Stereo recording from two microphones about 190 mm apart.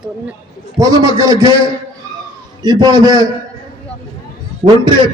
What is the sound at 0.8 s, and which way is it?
Speech, 20° right (ahead or behind).